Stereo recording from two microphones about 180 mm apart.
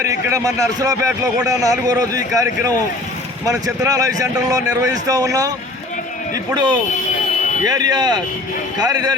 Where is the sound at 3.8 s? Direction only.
20° right (ahead or behind).